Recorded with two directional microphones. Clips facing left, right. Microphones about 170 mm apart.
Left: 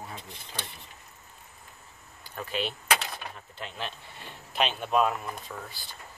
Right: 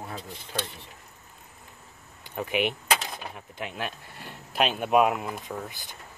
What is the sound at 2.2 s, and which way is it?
Speech, 15° right (ahead or behind).